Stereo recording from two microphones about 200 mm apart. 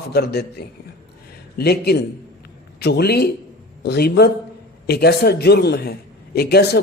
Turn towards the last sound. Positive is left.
turn(degrees=55)  # may be behind; listen again after turning